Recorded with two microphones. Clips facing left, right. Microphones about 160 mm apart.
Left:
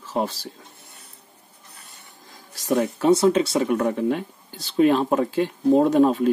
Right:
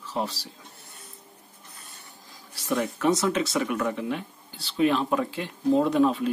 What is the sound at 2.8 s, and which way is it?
Speech, 30° left (ahead or behind).